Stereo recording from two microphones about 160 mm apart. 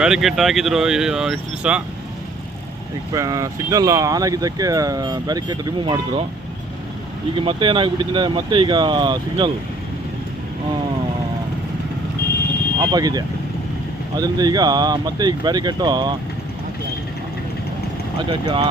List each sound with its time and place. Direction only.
0.0 s speech: centre (ahead or behind)
3.1 s speech: 20° right (ahead or behind)
7.3 s speech: 30° right (ahead or behind)
12.8 s speech: 25° right (ahead or behind)
18.2 s speech: 30° right (ahead or behind)